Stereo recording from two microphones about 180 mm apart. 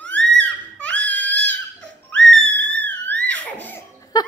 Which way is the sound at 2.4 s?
10° left (ahead or behind).